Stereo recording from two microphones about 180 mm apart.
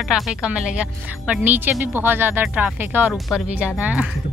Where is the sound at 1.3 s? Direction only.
10° right (ahead or behind).